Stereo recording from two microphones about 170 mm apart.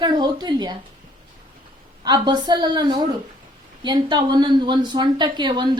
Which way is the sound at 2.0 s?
25° right (ahead or behind).